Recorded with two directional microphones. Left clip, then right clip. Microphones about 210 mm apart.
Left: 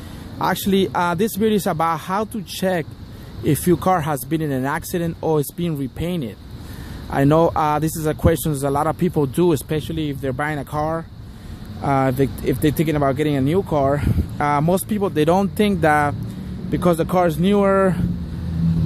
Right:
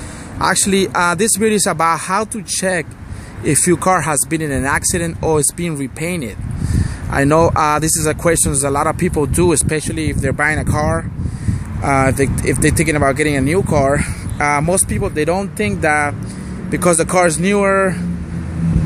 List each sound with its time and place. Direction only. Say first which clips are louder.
0.4 s speech: right 4 dB; 5° left (ahead or behind)